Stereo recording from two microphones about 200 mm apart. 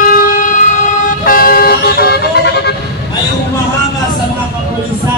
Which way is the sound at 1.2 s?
45° left (ahead or behind).